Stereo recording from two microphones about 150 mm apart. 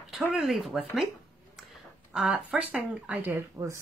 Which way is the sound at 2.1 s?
5° right (ahead or behind).